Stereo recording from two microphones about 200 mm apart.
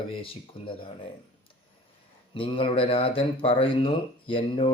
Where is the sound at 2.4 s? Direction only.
25° left (ahead or behind).